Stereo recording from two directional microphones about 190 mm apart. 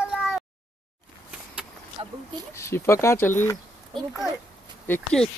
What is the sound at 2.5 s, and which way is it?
Speech, 15° left (ahead or behind).